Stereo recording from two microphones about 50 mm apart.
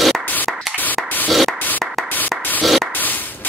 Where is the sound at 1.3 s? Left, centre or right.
Centre.